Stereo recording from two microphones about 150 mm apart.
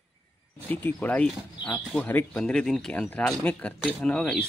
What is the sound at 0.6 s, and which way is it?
Speech, 10° left (ahead or behind).